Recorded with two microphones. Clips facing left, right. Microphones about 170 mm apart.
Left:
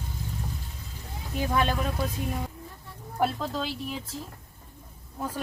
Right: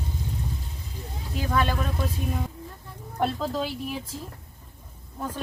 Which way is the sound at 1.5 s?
15° left (ahead or behind).